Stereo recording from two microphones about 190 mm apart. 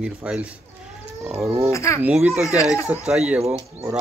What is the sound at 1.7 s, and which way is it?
Speech, 15° left (ahead or behind).